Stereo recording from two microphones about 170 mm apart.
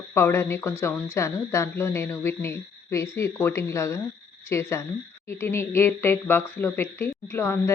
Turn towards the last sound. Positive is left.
turn(degrees=15)  # may be behind; listen again after turning